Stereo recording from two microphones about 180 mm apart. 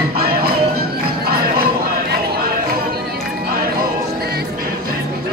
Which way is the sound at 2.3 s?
55° right (ahead or behind).